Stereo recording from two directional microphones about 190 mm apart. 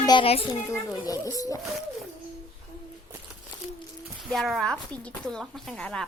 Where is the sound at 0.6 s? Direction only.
15° left (ahead or behind).